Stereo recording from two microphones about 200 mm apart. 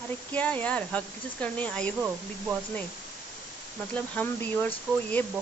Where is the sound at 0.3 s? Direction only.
5° left (ahead or behind).